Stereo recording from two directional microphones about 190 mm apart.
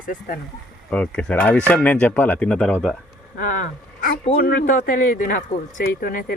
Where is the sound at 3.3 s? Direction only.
45° left (ahead or behind).